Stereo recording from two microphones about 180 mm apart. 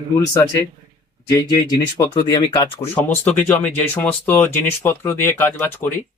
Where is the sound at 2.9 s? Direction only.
10° left (ahead or behind).